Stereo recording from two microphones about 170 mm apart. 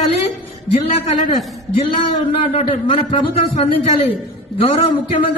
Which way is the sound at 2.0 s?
35° left (ahead or behind).